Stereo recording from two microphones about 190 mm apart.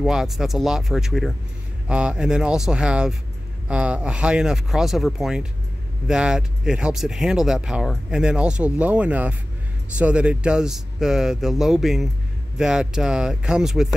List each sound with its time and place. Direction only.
0.0 s speech: centre (ahead or behind)